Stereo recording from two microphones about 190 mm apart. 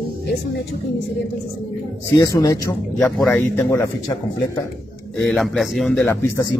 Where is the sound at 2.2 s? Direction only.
15° left (ahead or behind).